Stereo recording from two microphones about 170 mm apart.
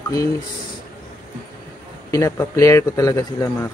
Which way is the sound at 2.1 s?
20° left (ahead or behind).